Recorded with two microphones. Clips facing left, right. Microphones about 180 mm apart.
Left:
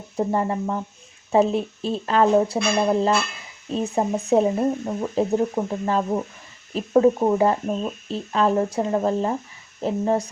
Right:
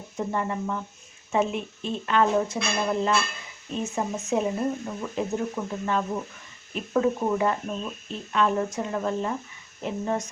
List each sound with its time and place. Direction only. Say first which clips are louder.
0.2 s speech: left 6 dB; 35° left (ahead or behind)